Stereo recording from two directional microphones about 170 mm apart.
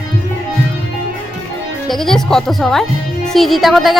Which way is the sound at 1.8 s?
Centre (ahead or behind).